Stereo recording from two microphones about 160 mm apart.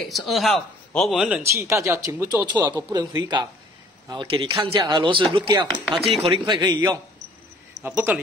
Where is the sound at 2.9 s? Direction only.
25° right (ahead or behind).